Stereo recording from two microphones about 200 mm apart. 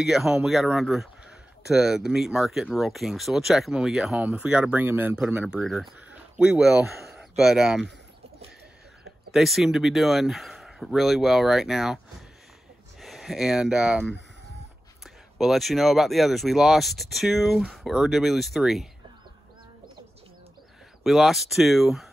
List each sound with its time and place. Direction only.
0.0 s speech: centre (ahead or behind)
9.3 s speech: centre (ahead or behind)
13.0 s speech: centre (ahead or behind)
21.0 s speech: centre (ahead or behind)